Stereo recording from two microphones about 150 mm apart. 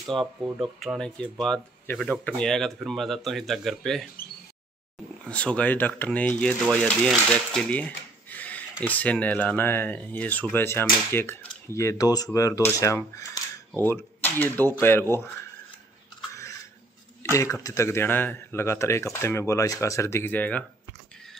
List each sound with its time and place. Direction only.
0.6 s speech: centre (ahead or behind)
5.2 s speech: 5° left (ahead or behind)
17.2 s speech: 20° left (ahead or behind)